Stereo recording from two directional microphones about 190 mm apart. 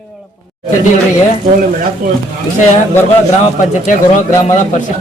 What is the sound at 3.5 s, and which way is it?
Speech, 40° left (ahead or behind).